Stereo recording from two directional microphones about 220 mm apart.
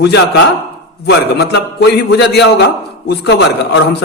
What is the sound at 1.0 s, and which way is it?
A man's voice, 50° left (ahead or behind).